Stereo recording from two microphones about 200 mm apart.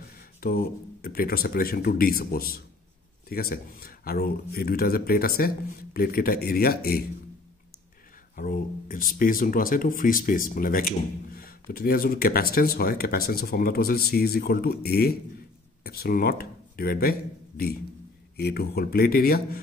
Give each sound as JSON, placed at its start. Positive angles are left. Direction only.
{"t": 0.4, "sound": "a sound", "side_deg": 45}
{"t": 1.0, "sound": "speech", "side_deg": 50}
{"t": 8.4, "sound": "speech", "side_deg": 45}